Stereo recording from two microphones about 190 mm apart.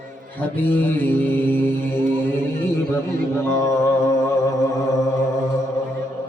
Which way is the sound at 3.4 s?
15° left (ahead or behind).